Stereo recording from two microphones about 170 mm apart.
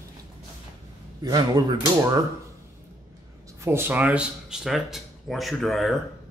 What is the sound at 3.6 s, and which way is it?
Speech, 15° right (ahead or behind).